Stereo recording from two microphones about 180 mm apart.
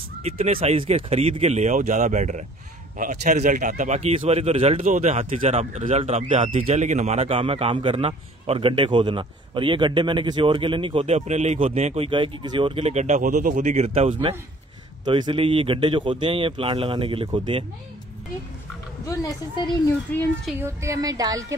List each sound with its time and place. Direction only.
0.2 s a man's voice: 35° right (ahead or behind)
19.0 s a woman's voice: 20° left (ahead or behind)
20.1 s a child's voice: 10° left (ahead or behind)
20.6 s speech: 15° right (ahead or behind)